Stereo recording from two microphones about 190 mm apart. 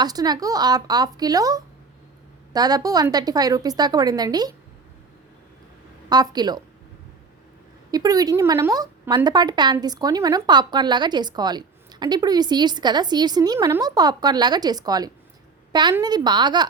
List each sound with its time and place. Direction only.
0.0 s a woman's voice: 20° right (ahead or behind)
6.1 s a woman's voice: 20° right (ahead or behind)
7.9 s a woman's voice: 20° right (ahead or behind)